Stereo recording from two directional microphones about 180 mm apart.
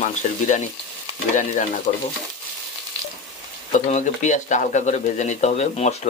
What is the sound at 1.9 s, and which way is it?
Speech, 40° left (ahead or behind).